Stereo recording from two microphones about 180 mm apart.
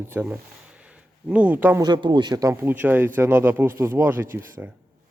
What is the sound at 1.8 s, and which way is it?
Speech, 25° right (ahead or behind).